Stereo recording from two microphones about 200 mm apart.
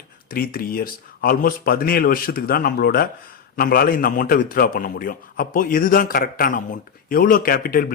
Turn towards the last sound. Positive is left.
turn(degrees=45)  # may be behind; listen again after turning